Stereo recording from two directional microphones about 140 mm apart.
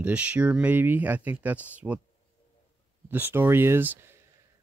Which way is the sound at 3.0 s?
15° right (ahead or behind).